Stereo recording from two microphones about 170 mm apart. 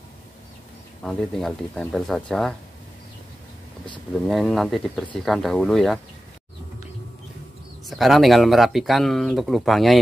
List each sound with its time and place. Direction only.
1.0 s speech: centre (ahead or behind)
4.3 s speech: centre (ahead or behind)
7.8 s speech: centre (ahead or behind)